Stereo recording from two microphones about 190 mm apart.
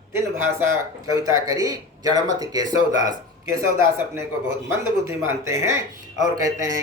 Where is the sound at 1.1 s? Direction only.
20° right (ahead or behind).